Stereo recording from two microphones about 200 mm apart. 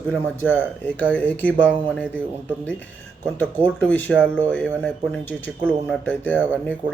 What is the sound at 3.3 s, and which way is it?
A man's voice, 10° left (ahead or behind).